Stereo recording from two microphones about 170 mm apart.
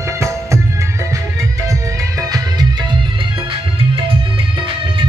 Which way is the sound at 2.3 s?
25° right (ahead or behind).